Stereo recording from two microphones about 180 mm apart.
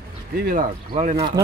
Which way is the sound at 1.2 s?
20° right (ahead or behind).